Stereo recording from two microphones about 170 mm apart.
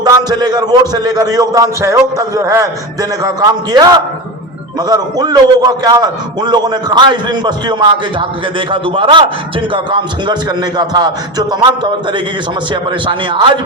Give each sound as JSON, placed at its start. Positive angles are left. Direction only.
{"t": 0.0, "sound": "a man's voice", "side_deg": -25}